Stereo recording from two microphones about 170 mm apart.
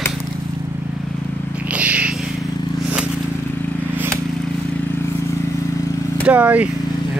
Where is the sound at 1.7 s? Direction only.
10° right (ahead or behind).